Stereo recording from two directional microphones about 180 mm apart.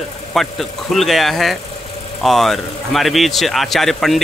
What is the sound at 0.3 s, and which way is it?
Speech, centre (ahead or behind).